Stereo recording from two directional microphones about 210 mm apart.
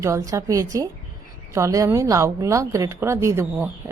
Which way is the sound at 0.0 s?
15° right (ahead or behind).